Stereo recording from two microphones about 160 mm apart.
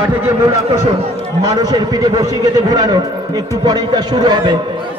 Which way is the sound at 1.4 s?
25° right (ahead or behind).